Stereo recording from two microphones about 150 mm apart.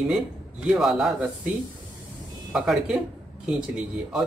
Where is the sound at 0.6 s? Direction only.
5° right (ahead or behind).